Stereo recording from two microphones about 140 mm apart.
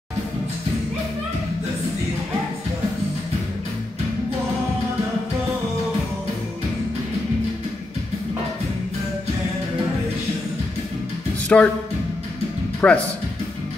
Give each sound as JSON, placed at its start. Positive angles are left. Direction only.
{"t": 11.4, "sound": "speech", "side_deg": 10}
{"t": 12.8, "sound": "speech", "side_deg": 10}